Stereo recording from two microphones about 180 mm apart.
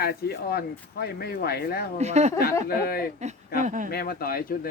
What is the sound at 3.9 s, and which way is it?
Speech, 55° left (ahead or behind).